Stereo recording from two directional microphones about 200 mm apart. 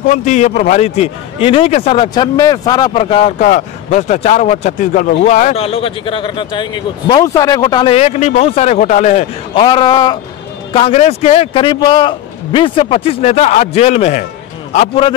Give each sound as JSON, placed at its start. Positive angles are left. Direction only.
{"t": 0.0, "sound": "a man's voice", "side_deg": 40}